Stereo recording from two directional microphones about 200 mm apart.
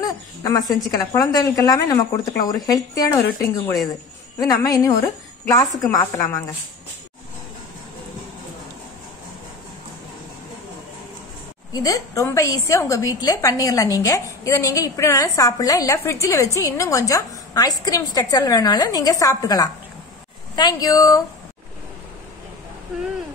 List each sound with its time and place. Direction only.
0.0 s a woman's voice: 20° left (ahead or behind)
4.4 s a woman's voice: 15° left (ahead or behind)
11.7 s a woman's voice: 15° left (ahead or behind)